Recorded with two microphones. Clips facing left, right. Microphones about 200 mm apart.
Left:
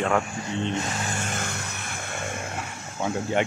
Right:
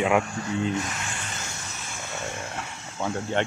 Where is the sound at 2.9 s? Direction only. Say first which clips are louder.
Left 2 dB; 10° left (ahead or behind).